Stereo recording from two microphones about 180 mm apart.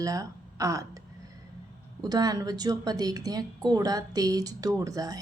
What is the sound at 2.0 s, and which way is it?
Speech, 20° right (ahead or behind).